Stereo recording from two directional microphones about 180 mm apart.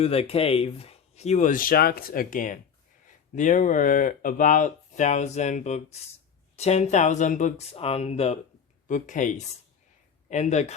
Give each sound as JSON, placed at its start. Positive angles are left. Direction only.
{"t": 0.0, "sound": "speech", "side_deg": 35}